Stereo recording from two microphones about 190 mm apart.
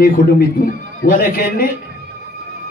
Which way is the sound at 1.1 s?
55° left (ahead or behind).